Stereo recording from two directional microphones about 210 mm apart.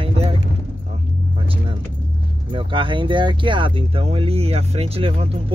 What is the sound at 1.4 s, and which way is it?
Speech, 25° right (ahead or behind).